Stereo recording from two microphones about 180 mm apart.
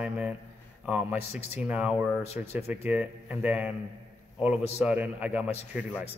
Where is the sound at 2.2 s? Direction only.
35° left (ahead or behind).